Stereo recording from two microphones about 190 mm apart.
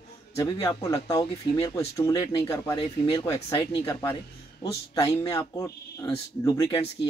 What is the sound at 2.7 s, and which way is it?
Speech, 30° left (ahead or behind).